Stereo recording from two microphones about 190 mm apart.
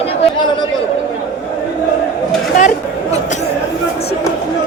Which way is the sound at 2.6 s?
40° left (ahead or behind).